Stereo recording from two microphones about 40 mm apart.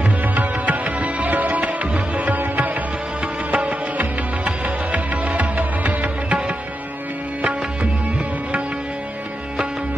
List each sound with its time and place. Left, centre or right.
0.2 s music: right
3.5 s music: right